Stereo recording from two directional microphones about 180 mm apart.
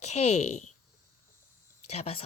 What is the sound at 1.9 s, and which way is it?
Speech, 35° left (ahead or behind).